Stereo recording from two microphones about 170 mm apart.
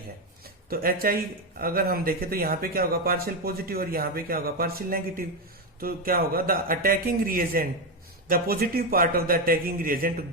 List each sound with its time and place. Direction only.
0.4 s speech: 60° right (ahead or behind)